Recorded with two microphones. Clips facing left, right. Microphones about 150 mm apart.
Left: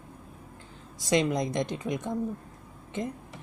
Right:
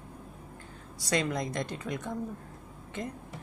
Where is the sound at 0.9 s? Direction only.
20° left (ahead or behind).